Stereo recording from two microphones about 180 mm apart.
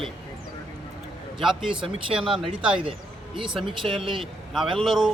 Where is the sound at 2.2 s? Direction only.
30° right (ahead or behind).